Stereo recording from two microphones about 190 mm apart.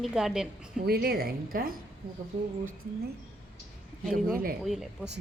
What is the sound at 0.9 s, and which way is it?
Speech, 55° right (ahead or behind).